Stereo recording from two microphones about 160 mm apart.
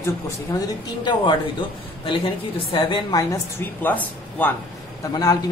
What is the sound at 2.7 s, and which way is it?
Speech, 30° left (ahead or behind).